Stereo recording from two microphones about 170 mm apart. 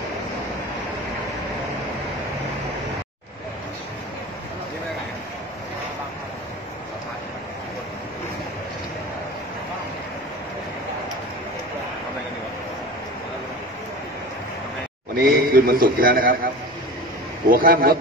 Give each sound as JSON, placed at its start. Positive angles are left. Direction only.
{"t": 15.1, "sound": "a man's voice", "side_deg": -60}
{"t": 17.5, "sound": "a man's voice", "side_deg": -55}